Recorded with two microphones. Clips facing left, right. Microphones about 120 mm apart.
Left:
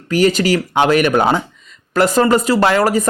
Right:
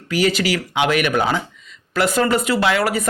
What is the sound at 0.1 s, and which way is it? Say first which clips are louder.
Speech: left 5 dB; 45° left (ahead or behind).